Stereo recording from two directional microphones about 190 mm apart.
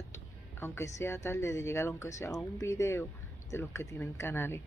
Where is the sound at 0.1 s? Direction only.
15° left (ahead or behind).